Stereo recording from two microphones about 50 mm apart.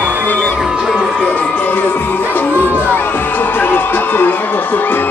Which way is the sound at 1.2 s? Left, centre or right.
Left.